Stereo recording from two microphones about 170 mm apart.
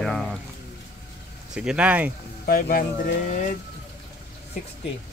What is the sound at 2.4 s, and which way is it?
Speech, 55° left (ahead or behind).